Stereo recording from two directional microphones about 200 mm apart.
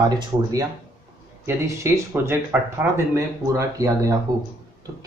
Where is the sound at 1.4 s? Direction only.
10° right (ahead or behind).